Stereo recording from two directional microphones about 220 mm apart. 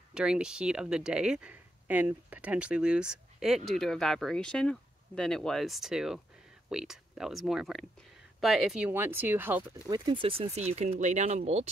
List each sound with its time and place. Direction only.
0.1 s speech: 5° right (ahead or behind)
9.8 s speech: 20° right (ahead or behind)